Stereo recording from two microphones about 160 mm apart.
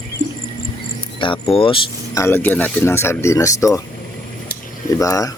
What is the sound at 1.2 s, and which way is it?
Speech, 30° left (ahead or behind).